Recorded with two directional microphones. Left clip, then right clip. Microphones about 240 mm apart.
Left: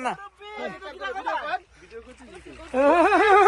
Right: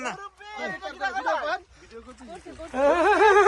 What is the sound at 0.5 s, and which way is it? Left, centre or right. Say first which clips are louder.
Speech: right 2 dB; right.